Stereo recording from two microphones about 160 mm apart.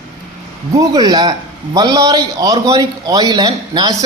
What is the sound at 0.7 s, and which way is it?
A man's voice, 20° right (ahead or behind).